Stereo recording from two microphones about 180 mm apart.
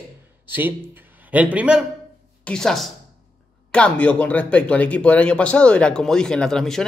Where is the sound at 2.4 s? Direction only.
5° left (ahead or behind).